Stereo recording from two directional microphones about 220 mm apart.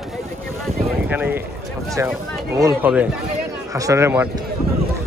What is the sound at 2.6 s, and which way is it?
Speech, 10° right (ahead or behind).